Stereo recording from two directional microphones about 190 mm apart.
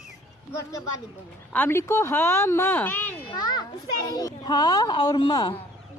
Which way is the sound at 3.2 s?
20° left (ahead or behind).